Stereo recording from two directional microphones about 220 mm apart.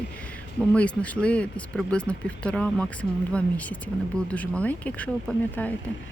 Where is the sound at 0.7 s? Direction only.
5° left (ahead or behind).